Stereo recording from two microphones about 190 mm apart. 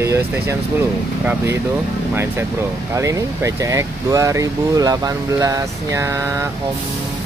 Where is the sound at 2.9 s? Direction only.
15° right (ahead or behind).